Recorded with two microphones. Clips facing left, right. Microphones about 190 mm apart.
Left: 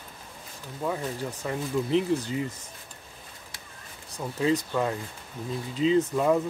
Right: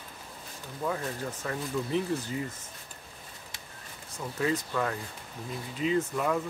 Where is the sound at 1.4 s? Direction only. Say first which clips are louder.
Left 4 dB; 20° left (ahead or behind).